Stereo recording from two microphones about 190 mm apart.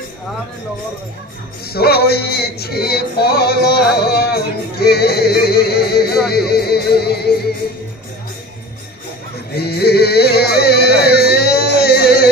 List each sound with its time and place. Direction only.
1.7 s music: 55° left (ahead or behind)
9.5 s music: 55° left (ahead or behind)